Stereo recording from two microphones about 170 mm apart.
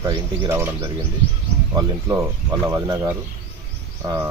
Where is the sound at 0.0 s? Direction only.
20° right (ahead or behind).